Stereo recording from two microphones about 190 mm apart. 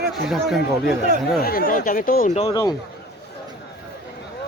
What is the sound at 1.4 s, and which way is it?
Speech, 50° left (ahead or behind).